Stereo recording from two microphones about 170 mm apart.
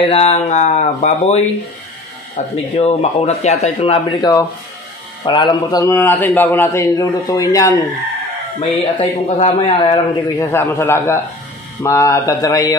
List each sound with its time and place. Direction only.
0.0 s a man's voice: 40° left (ahead or behind); by 7.8 s 20° left (ahead or behind)
8.5 s speech: 30° left (ahead or behind)
10.4 s a man's voice: 15° left (ahead or behind)